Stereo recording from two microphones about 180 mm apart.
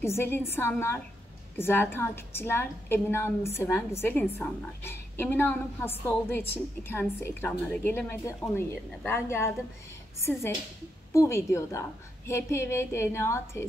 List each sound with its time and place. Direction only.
0.0 s a woman's voice: 15° left (ahead or behind)
11.1 s a woman's voice: 15° left (ahead or behind)